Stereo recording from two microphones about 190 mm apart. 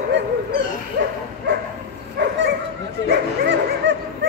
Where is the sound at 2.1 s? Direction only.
65° right (ahead or behind).